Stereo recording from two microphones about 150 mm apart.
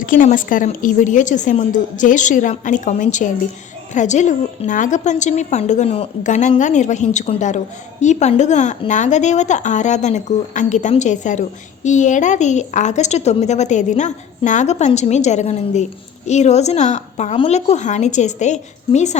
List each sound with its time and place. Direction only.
0.0 s a woman's voice: 65° left (ahead or behind)